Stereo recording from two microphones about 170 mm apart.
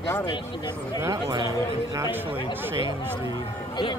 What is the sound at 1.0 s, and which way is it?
Speech, 20° right (ahead or behind).